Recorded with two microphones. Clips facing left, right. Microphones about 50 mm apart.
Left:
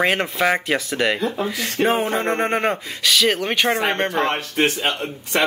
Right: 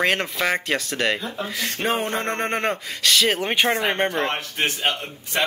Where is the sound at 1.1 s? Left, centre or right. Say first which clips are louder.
Left 6 dB; left.